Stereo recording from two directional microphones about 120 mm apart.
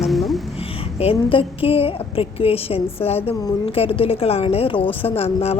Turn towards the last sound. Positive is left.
turn(degrees=55)  # may be behind; listen again after turning